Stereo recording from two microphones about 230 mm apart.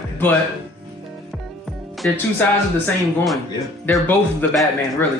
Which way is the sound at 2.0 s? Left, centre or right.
Centre.